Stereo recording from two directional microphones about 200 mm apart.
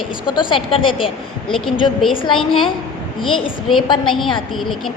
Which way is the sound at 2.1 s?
25° left (ahead or behind).